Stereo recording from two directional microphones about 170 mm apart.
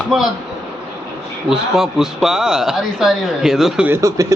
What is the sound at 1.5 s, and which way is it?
Speech, centre (ahead or behind).